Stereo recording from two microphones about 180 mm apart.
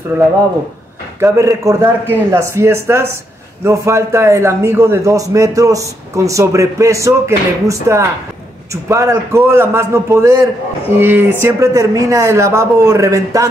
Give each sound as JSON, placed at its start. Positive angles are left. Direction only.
{"t": 0.1, "sound": "a man's voice", "side_deg": -10}